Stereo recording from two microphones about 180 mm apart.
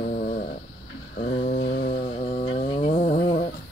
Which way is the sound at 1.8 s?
35° left (ahead or behind).